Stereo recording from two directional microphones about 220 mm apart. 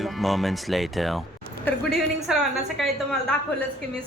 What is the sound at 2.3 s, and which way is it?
Speech, centre (ahead or behind).